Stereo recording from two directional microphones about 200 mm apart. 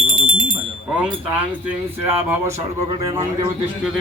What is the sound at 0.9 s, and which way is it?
Speech, 5° right (ahead or behind).